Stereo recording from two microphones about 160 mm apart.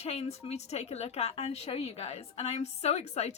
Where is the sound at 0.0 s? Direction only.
40° left (ahead or behind).